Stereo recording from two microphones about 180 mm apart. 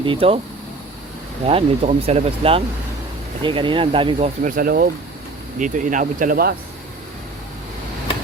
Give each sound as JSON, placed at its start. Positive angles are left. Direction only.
{"t": 0.0, "sound": "speech", "side_deg": -30}
{"t": 1.5, "sound": "speech", "side_deg": -35}
{"t": 4.4, "sound": "speech", "side_deg": -55}